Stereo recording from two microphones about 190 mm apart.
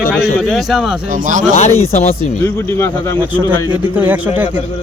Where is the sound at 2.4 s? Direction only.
10° left (ahead or behind).